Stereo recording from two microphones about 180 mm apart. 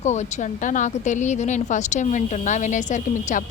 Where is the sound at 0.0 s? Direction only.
40° left (ahead or behind).